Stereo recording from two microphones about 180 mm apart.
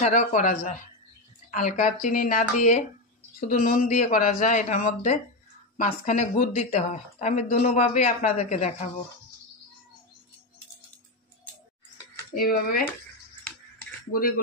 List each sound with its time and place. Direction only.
0.0 s speech: 45° left (ahead or behind)
12.4 s speech: 55° left (ahead or behind)
14.1 s speech: 55° left (ahead or behind)